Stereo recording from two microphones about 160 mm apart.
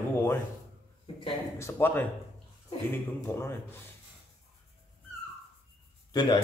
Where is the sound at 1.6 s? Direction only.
15° left (ahead or behind).